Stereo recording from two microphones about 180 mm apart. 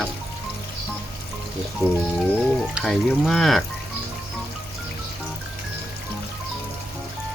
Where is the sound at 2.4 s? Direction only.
Centre (ahead or behind).